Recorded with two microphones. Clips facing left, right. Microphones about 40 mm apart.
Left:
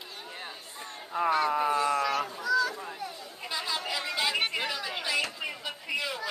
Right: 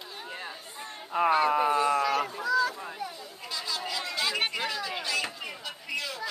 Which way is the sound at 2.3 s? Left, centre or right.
Centre.